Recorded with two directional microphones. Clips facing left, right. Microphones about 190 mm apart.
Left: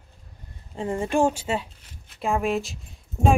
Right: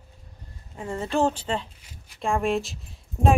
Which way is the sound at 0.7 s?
15° left (ahead or behind).